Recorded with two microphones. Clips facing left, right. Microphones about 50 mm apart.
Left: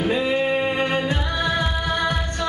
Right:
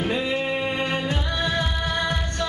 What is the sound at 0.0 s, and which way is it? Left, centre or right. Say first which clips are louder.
Music: left 4 dB; centre.